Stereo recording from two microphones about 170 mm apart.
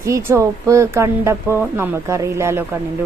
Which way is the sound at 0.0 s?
15° right (ahead or behind).